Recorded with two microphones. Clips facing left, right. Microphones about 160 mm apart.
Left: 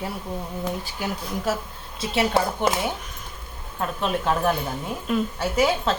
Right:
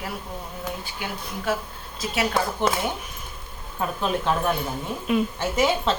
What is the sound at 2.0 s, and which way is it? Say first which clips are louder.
Speech: left 3 dB; 30° left (ahead or behind).